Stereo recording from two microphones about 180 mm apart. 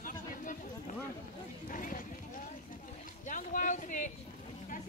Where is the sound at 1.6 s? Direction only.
45° left (ahead or behind).